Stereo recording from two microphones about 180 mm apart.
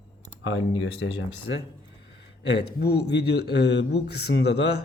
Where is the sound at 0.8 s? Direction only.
90° left.